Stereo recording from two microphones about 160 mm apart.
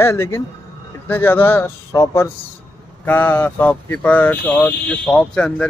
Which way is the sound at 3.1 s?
10° left (ahead or behind).